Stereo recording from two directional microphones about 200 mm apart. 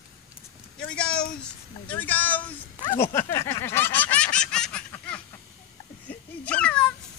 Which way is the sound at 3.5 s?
10° left (ahead or behind).